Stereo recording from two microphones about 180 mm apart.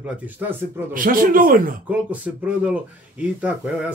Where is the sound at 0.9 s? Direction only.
50° right (ahead or behind).